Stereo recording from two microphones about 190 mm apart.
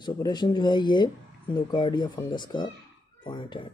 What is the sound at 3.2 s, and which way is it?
Speech, 25° left (ahead or behind).